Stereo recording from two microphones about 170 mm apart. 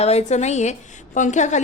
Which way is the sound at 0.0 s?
40° left (ahead or behind).